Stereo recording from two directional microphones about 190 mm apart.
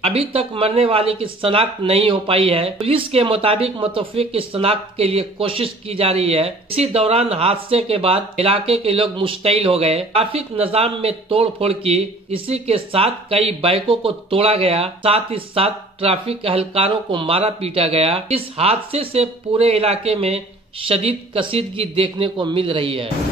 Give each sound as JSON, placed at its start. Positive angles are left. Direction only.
{"t": 0.0, "sound": "speech", "side_deg": -30}